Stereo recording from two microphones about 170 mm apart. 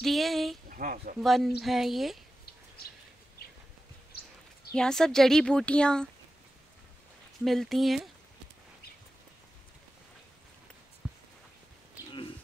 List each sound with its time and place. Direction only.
0.0 s a woman's voice: centre (ahead or behind)
0.7 s speech: 55° right (ahead or behind)
1.2 s a woman's voice: centre (ahead or behind)
4.7 s a woman's voice: 5° left (ahead or behind)
7.4 s a woman's voice: centre (ahead or behind)
11.0 s a sound: 5° right (ahead or behind)